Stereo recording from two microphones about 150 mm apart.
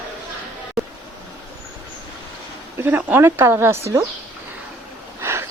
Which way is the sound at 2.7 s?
10° right (ahead or behind).